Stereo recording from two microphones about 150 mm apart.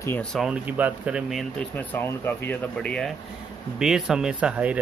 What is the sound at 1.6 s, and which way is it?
Speech, 10° left (ahead or behind).